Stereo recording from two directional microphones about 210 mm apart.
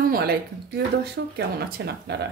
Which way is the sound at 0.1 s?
45° right (ahead or behind).